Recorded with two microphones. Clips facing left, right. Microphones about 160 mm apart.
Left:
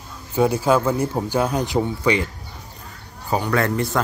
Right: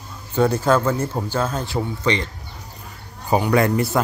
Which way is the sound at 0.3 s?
10° left (ahead or behind).